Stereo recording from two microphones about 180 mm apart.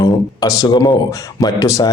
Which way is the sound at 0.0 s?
20° left (ahead or behind).